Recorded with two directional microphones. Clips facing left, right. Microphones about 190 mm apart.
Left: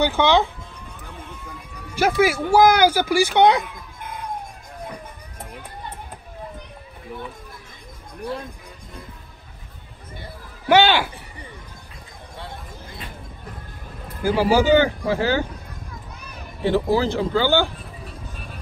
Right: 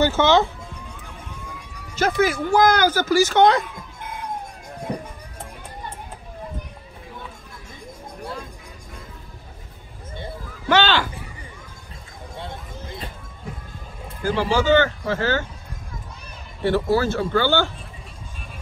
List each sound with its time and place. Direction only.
0.0 s speech: 15° left (ahead or behind)
2.0 s speech: 10° left (ahead or behind)
10.7 s speech: 10° left (ahead or behind)
12.4 s a sound: 20° right (ahead or behind)
14.2 s speech: 10° left (ahead or behind)
16.6 s speech: 15° left (ahead or behind)